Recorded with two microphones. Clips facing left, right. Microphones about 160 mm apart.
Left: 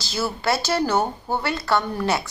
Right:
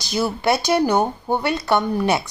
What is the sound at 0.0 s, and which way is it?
Speech, 15° right (ahead or behind).